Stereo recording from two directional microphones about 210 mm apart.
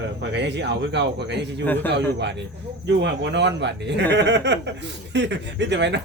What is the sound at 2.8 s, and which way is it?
Speech, 55° right (ahead or behind).